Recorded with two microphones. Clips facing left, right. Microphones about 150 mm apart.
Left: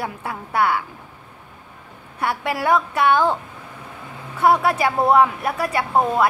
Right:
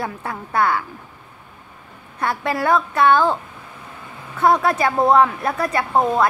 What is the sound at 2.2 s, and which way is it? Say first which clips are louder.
A woman's voice: right 1 dB; 10° left (ahead or behind).